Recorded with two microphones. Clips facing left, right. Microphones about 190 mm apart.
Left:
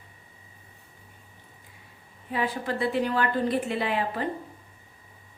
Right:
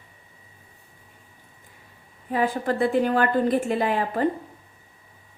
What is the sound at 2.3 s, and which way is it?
A woman's voice, 45° right (ahead or behind).